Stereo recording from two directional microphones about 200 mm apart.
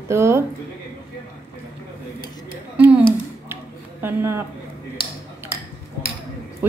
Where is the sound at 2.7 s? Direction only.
5° right (ahead or behind).